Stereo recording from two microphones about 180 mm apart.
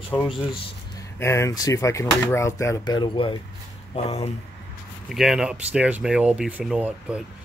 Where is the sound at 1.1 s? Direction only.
15° left (ahead or behind); by 4.3 s 35° left (ahead or behind).